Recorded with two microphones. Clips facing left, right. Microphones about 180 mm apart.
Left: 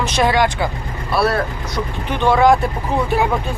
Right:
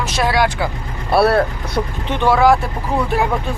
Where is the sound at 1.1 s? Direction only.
60° right (ahead or behind).